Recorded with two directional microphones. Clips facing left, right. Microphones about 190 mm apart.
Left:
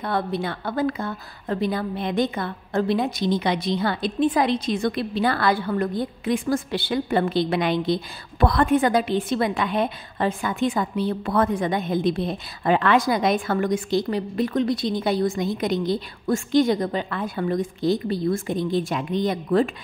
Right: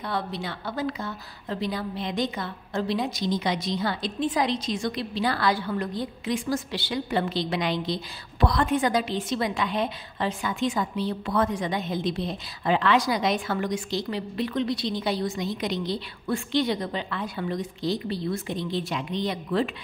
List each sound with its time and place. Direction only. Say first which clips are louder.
0.0 s a woman's voice: left 5 dB; 55° left (ahead or behind)